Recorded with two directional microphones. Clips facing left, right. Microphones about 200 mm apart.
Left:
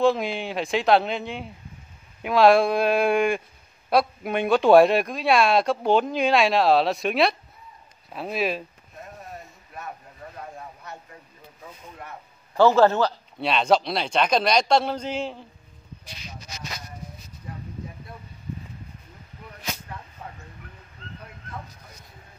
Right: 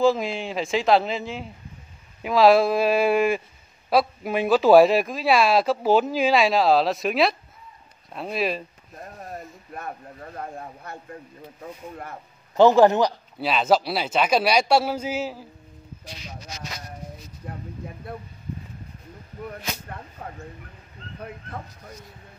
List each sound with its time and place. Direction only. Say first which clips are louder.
0.0 s speech: right 1 dB; centre (ahead or behind)
10.3 s a sound: right 5 dB; 55° right (ahead or behind)
12.5 s a man's voice: right 2 dB; 15° right (ahead or behind)
13.4 s a man's voice: even; 5° right (ahead or behind)
17.4 s vehicle: right 2 dB; 60° right (ahead or behind)
20.2 s a sound: right 5 dB; 45° right (ahead or behind)